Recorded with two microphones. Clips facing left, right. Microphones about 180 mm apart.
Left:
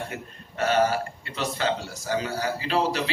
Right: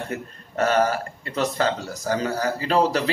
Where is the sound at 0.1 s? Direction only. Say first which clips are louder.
Right 7 dB; 45° right (ahead or behind).